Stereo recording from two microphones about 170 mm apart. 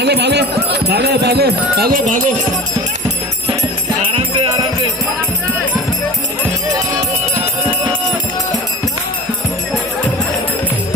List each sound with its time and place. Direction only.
0.0 s speech: 80° right; by 2.3 s 50° right (ahead or behind)
4.1 s music: 30° right (ahead or behind)